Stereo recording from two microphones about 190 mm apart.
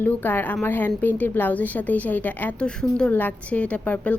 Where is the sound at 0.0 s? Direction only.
10° left (ahead or behind).